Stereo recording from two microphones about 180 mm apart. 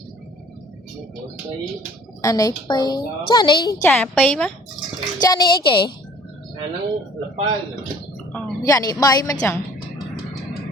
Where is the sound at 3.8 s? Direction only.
10° left (ahead or behind).